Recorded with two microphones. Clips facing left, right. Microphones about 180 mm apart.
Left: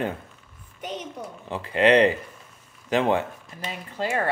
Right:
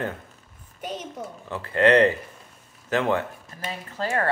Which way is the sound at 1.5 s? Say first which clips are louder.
Even; 15° left (ahead or behind).